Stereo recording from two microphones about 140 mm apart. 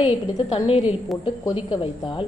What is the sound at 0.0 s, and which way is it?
A woman's voice, 40° left (ahead or behind).